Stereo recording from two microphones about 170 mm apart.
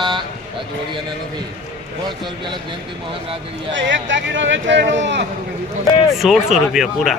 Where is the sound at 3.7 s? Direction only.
90° right.